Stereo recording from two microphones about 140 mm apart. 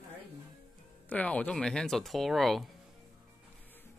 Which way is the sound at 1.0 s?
10° left (ahead or behind).